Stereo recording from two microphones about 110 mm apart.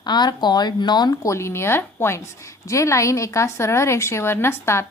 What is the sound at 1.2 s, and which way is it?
A woman's voice, 25° left (ahead or behind).